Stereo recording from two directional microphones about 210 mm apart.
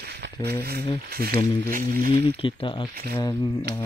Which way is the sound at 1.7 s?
40° right (ahead or behind).